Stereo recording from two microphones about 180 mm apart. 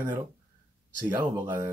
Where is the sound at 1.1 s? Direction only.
15° right (ahead or behind).